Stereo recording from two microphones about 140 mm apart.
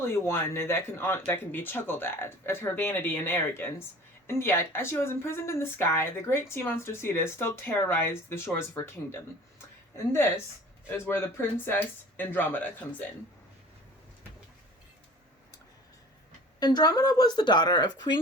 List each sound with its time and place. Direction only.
0.0 s speech: 15° left (ahead or behind)
16.6 s speech: 30° left (ahead or behind)